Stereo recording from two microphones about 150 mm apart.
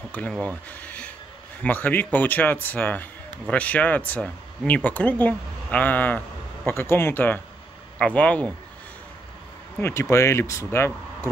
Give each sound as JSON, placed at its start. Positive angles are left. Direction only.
{"t": 0.1, "sound": "speech", "side_deg": 10}
{"t": 0.7, "sound": "a sound", "side_deg": 10}
{"t": 1.6, "sound": "speech", "side_deg": 10}
{"t": 9.8, "sound": "speech", "side_deg": 15}